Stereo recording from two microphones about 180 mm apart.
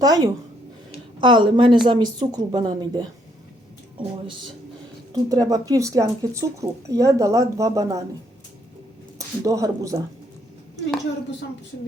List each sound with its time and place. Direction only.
0.0 s speech: 20° right (ahead or behind)
5.1 s speech: 20° right (ahead or behind)
9.1 s a woman's voice: 20° right (ahead or behind)